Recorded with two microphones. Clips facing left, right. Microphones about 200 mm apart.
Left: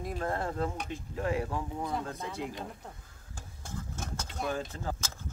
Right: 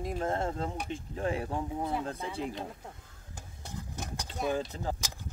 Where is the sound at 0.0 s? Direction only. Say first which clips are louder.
Right 2 dB; 25° right (ahead or behind).